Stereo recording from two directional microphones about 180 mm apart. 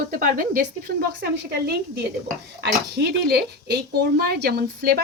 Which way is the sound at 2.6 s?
65° right (ahead or behind).